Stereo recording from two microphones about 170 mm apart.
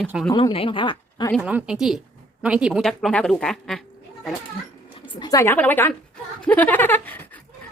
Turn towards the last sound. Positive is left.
turn(degrees=10)  # may be behind; listen again after turning